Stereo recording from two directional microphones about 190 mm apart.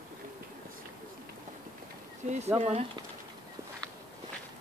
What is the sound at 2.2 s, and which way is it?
Speech, 35° right (ahead or behind).